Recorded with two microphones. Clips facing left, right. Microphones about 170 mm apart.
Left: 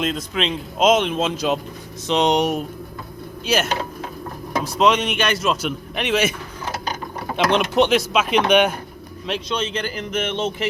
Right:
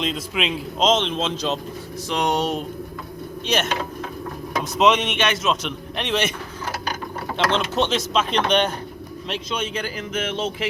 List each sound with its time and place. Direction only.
0.0 s a man's voice: centre (ahead or behind)
0.8 s speech: 10° left (ahead or behind)
2.0 s a man's voice: 20° left (ahead or behind); by 3.8 s 5° left (ahead or behind)
4.8 s a man's voice: centre (ahead or behind)
7.3 s speech: 15° left (ahead or behind)
9.2 s a man's voice: centre (ahead or behind)